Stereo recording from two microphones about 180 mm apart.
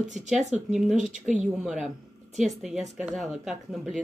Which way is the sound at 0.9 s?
45° right (ahead or behind).